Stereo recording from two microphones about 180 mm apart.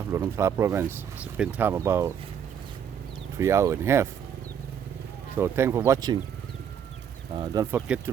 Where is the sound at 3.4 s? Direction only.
15° right (ahead or behind).